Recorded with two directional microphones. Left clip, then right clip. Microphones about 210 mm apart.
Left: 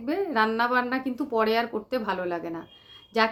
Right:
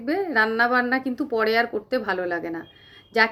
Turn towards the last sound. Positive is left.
turn(degrees=-5)  # may be behind; listen again after turning